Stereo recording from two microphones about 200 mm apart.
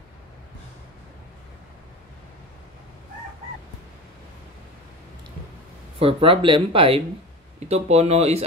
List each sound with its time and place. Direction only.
5.9 s speech: 30° right (ahead or behind)